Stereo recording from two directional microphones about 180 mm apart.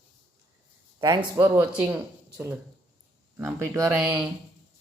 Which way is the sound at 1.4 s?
10° right (ahead or behind).